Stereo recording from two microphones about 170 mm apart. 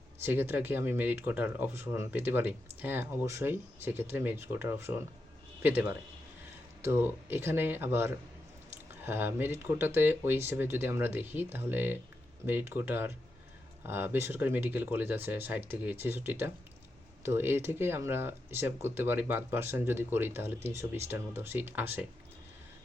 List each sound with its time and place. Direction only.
0.2 s speech: 15° right (ahead or behind)